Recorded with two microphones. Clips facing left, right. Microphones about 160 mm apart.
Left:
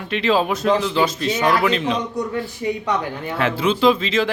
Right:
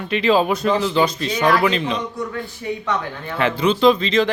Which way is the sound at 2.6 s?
20° left (ahead or behind).